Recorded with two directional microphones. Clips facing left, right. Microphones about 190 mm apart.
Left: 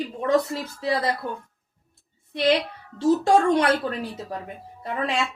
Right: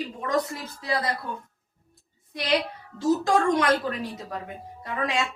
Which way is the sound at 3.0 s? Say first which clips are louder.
Left 3 dB; 30° left (ahead or behind).